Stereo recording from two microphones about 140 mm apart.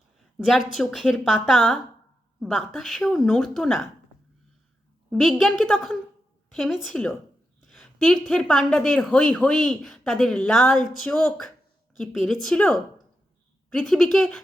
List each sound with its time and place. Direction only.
0.3 s speech: centre (ahead or behind)
5.1 s speech: centre (ahead or behind)